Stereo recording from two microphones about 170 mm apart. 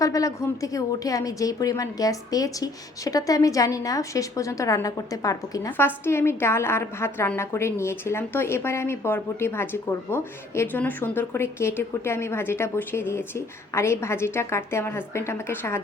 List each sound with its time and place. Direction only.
0.0 s a woman's voice: 20° left (ahead or behind)